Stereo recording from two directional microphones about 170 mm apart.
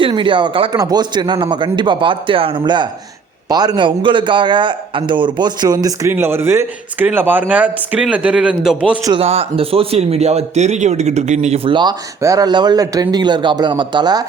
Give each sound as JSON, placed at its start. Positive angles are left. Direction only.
{"t": 0.0, "sound": "a man's voice", "side_deg": -30}
{"t": 9.0, "sound": "speech", "side_deg": -35}